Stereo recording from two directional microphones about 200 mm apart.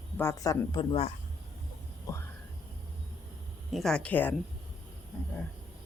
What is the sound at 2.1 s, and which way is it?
Speech, 15° left (ahead or behind).